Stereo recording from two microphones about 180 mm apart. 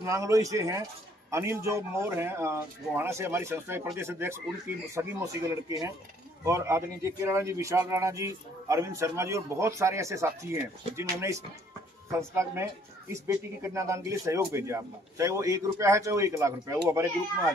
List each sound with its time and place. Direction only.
0.0 s speech: 15° right (ahead or behind)